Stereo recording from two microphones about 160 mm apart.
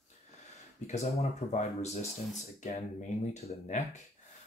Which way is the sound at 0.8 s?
45° left (ahead or behind).